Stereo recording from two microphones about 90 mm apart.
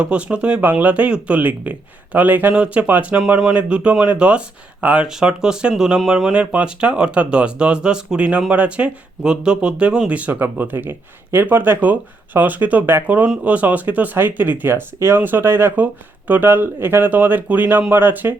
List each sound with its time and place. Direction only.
0.0 s speech: 15° right (ahead or behind)